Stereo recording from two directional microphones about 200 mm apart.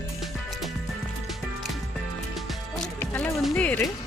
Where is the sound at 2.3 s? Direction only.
Centre (ahead or behind).